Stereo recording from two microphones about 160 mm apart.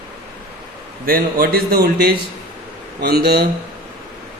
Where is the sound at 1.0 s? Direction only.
65° right (ahead or behind); by 3.4 s 80° right.